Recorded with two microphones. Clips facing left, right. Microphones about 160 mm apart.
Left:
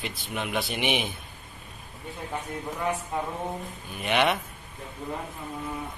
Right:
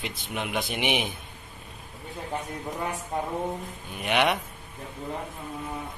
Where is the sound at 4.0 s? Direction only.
10° right (ahead or behind).